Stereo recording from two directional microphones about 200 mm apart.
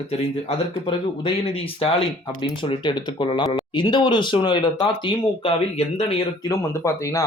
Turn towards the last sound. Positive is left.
turn(degrees=15)  # may be behind; listen again after turning